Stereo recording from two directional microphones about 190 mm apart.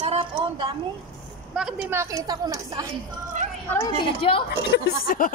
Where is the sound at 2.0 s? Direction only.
15° right (ahead or behind).